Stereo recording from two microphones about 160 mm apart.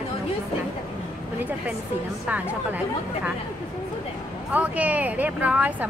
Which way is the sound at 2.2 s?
10° right (ahead or behind).